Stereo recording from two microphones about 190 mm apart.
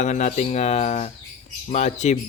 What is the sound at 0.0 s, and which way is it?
A man's voice, 40° left (ahead or behind).